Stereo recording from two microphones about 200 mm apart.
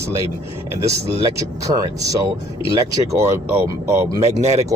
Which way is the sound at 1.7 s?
15° right (ahead or behind).